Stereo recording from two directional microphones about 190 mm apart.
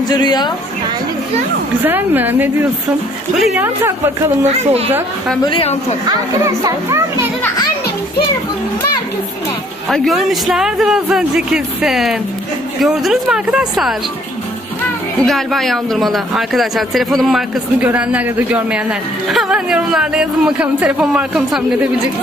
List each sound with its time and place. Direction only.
0.1 s a woman's voice: 20° left (ahead or behind)
1.9 s a child's voice: 10° right (ahead or behind)
3.6 s a child's voice: 10° right (ahead or behind)
4.5 s a woman's voice: 30° right (ahead or behind)
5.5 s a woman's voice: 30° left (ahead or behind)
6.0 s a child's voice: 15° right (ahead or behind)
9.8 s a man's voice: centre (ahead or behind)
15.2 s a man's voice: centre (ahead or behind)